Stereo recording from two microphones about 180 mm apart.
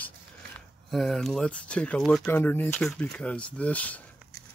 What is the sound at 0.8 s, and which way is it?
Speech, centre (ahead or behind).